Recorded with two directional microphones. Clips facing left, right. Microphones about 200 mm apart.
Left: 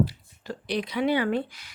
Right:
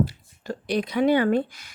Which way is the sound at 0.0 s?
45° right (ahead or behind).